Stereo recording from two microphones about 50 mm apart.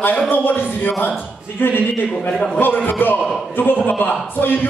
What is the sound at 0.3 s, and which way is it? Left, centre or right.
Speech, left.